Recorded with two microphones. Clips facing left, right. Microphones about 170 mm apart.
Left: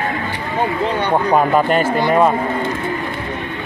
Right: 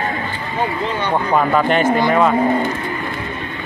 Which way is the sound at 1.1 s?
20° left (ahead or behind).